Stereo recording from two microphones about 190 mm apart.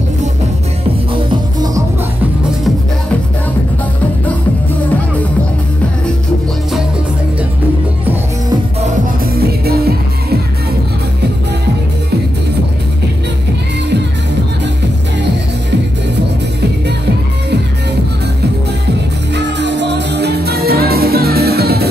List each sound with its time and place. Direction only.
1.1 s music: 25° right (ahead or behind)
8.8 s music: 50° right (ahead or behind)
19.3 s music: 65° right (ahead or behind)